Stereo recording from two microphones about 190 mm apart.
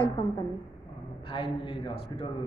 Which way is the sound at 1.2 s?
25° left (ahead or behind).